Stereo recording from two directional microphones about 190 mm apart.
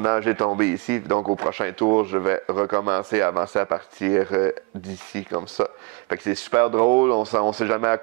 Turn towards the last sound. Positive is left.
turn(degrees=-15)  # may be behind; listen again after turning